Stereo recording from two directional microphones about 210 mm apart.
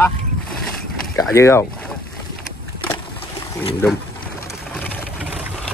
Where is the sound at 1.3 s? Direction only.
15° left (ahead or behind).